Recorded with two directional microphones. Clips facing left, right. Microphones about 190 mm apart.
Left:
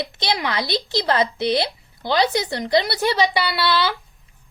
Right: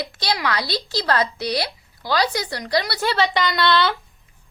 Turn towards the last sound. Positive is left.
turn(degrees=5)  # may be behind; listen again after turning